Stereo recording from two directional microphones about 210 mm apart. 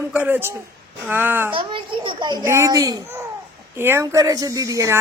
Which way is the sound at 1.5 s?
25° right (ahead or behind).